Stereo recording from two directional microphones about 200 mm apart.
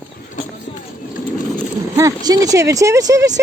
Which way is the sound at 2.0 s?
15° right (ahead or behind).